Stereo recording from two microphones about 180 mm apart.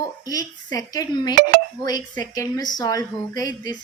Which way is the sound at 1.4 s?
60° right (ahead or behind).